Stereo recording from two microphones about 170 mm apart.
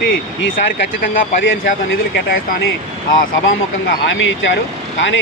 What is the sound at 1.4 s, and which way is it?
Speech, 90° left.